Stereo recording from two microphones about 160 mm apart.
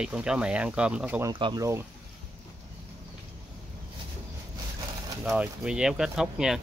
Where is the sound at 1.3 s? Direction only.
30° right (ahead or behind).